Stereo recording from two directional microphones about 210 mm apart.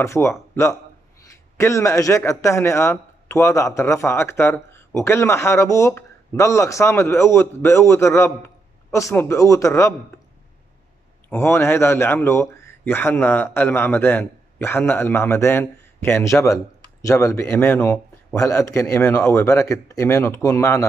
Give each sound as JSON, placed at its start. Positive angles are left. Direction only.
{"t": 0.0, "sound": "a man's voice", "side_deg": 15}
{"t": 11.2, "sound": "a man's voice", "side_deg": 10}